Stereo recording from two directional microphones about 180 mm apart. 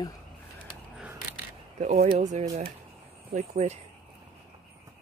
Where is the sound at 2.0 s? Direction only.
40° right (ahead or behind).